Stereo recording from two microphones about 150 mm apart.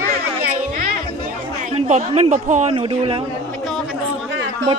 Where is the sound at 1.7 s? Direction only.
45° right (ahead or behind).